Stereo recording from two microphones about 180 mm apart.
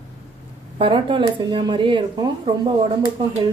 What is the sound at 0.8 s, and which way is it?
Speech, 30° right (ahead or behind).